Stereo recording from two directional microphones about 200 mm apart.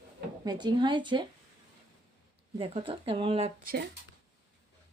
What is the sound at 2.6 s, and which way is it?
Speech, 25° right (ahead or behind).